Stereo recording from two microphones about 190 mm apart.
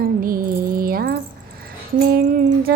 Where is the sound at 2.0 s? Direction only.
55° right (ahead or behind).